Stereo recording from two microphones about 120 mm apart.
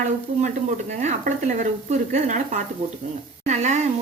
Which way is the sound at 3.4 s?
75° right (ahead or behind).